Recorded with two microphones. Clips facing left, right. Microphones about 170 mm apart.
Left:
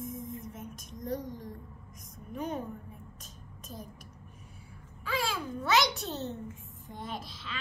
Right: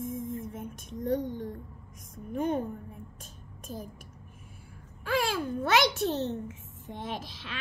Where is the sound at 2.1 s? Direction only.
60° right (ahead or behind).